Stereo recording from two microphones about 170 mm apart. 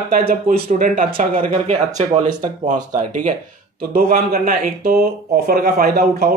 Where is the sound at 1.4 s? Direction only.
40° right (ahead or behind).